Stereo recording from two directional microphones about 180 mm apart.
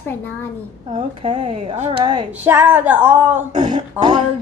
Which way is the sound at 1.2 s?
30° right (ahead or behind).